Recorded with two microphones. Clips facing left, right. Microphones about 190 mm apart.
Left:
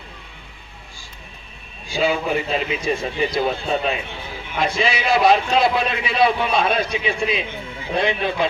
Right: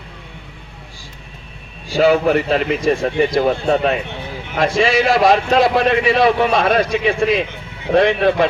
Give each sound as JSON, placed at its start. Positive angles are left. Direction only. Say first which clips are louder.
{"t": 1.9, "sound": "a man's voice", "louder": "right 7 dB", "side_deg": -75}
{"t": 4.5, "sound": "a man's voice", "louder": "right 6 dB", "side_deg": -90}